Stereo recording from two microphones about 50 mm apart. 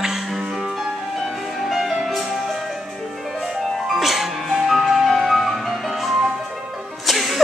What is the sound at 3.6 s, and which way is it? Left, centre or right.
Music, centre.